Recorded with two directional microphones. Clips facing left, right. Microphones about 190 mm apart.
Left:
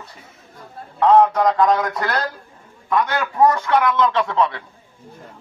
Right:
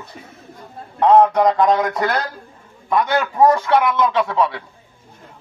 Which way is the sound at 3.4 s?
15° right (ahead or behind).